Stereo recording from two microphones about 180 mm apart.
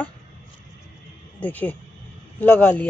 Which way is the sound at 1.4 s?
10° left (ahead or behind).